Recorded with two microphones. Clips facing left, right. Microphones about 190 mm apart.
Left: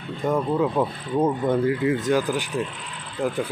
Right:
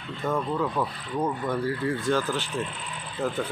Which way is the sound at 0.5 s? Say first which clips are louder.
Left 5 dB; 25° left (ahead or behind).